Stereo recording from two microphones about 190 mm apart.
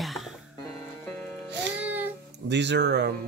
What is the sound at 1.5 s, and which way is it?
Music, 65° right (ahead or behind).